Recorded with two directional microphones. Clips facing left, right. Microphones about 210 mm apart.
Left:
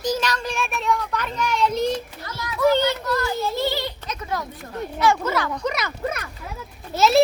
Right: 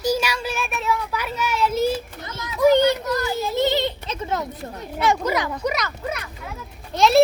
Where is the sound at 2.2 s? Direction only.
20° right (ahead or behind).